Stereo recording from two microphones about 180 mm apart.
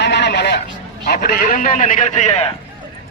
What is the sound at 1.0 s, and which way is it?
A man's voice, 55° left (ahead or behind).